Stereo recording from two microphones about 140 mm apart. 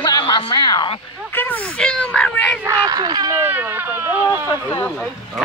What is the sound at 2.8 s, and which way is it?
Speech, 30° right (ahead or behind).